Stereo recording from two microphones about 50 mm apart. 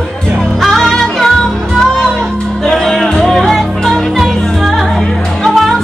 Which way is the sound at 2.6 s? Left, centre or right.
Centre.